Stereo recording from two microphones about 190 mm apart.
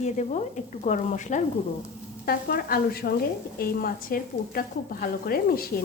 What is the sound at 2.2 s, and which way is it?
A woman's voice, 50° left (ahead or behind).